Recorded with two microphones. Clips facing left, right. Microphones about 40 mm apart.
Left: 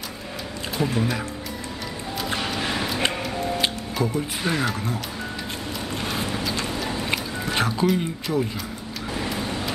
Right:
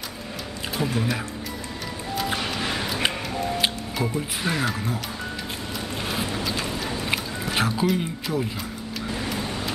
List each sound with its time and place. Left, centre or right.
0.7 s speech: centre
2.3 s music: centre
3.3 s scissors: centre
3.6 s speech: centre
5.9 s vehicle: centre
6.7 s a sound: centre
7.9 s speech: centre
9.4 s vehicle: centre